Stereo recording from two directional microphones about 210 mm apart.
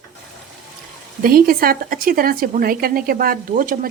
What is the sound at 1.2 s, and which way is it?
Speech, 45° right (ahead or behind).